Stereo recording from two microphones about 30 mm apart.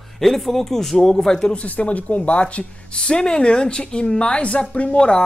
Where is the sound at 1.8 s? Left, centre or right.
Left.